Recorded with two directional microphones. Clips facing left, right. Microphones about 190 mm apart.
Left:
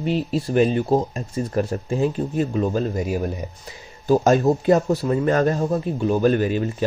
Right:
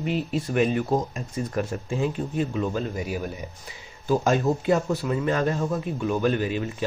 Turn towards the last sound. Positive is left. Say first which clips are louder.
# left 5 dB
turn(degrees=45)  # may be behind; listen again after turning